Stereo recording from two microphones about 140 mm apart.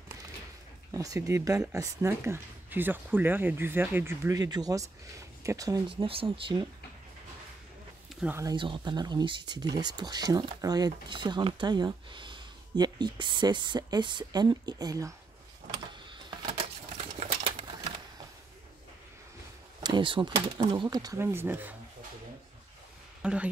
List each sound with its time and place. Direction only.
0.9 s speech: 25° right (ahead or behind)
5.9 s speech: 40° right (ahead or behind)
8.2 s speech: 10° right (ahead or behind)
8.5 s speech: 35° right (ahead or behind)
17.2 s a sound: 50° right (ahead or behind)
19.8 s speech: 35° right (ahead or behind); by 21.7 s 15° right (ahead or behind)
23.2 s speech: 10° right (ahead or behind)